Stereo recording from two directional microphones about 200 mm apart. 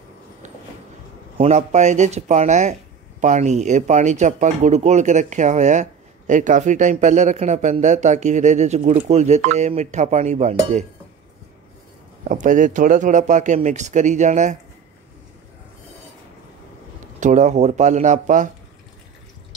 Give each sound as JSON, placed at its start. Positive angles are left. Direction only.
{"t": 1.4, "sound": "speech", "side_deg": -35}
{"t": 12.3, "sound": "speech", "side_deg": -40}
{"t": 17.2, "sound": "speech", "side_deg": -35}